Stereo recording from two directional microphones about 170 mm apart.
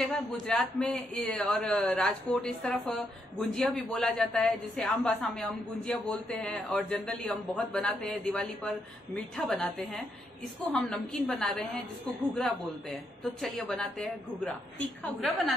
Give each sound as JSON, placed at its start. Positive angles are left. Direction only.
{"t": 0.1, "sound": "a man's voice", "side_deg": 5}
{"t": 13.2, "sound": "a man's voice", "side_deg": 0}